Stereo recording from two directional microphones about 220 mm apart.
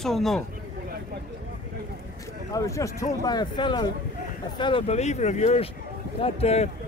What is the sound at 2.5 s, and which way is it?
Speech, 15° left (ahead or behind).